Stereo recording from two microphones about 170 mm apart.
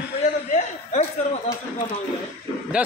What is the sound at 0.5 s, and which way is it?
Speech, 40° left (ahead or behind).